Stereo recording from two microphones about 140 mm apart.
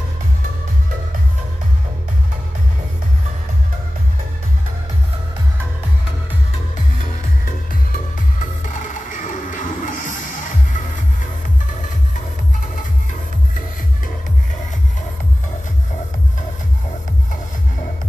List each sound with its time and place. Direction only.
7.4 s music: 75° left (ahead or behind)